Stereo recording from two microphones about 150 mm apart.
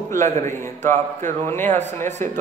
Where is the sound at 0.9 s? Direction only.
55° right (ahead or behind).